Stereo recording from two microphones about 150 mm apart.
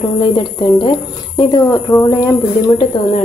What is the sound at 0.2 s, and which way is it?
A woman's voice, 30° left (ahead or behind).